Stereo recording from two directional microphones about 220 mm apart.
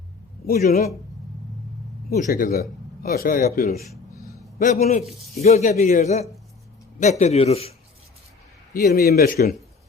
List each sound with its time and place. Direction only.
0.4 s speech: 40° left (ahead or behind)
2.0 s speech: 40° left (ahead or behind)
4.3 s a sound: 40° left (ahead or behind)
5.4 s speech: 30° left (ahead or behind)
8.7 s speech: 45° left (ahead or behind)